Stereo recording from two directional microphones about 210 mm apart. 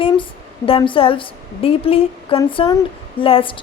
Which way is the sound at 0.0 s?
25° left (ahead or behind).